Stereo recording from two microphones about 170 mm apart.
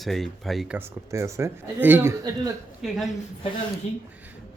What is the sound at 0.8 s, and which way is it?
Speech, 15° right (ahead or behind).